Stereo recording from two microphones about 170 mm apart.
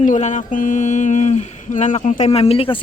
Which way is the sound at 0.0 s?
45° left (ahead or behind).